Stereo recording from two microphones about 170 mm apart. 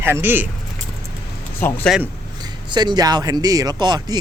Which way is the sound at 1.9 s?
Centre (ahead or behind).